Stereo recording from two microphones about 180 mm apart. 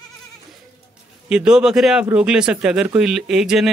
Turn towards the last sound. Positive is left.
turn(degrees=0)  # may be behind; listen again after turning